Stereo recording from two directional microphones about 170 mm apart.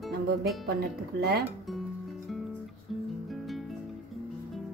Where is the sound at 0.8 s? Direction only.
70° right (ahead or behind).